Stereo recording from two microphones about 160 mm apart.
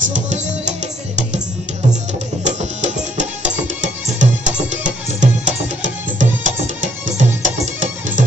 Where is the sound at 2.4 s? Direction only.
50° right (ahead or behind).